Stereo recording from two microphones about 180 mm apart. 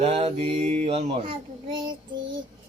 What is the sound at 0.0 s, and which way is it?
Mantra, 35° right (ahead or behind).